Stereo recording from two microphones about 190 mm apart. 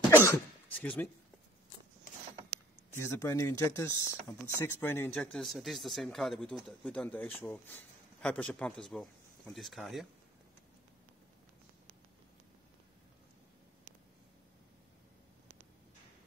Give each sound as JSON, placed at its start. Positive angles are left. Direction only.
{"t": 0.1, "sound": "cough", "side_deg": 10}
{"t": 2.9, "sound": "speech", "side_deg": 15}